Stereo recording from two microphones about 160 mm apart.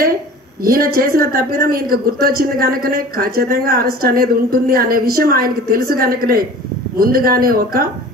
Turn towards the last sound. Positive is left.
turn(degrees=-65)  # may be behind; listen again after turning